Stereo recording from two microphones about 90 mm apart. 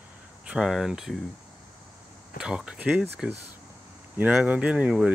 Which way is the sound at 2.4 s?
10° right (ahead or behind).